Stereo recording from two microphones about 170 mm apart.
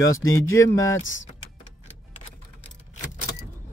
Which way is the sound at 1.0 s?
90° left.